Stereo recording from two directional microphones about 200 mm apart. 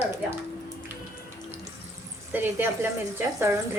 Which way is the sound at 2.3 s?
10° right (ahead or behind).